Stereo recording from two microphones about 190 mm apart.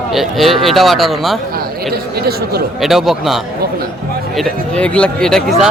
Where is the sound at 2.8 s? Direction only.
Centre (ahead or behind).